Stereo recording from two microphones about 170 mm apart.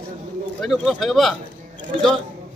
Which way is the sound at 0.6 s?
Centre (ahead or behind).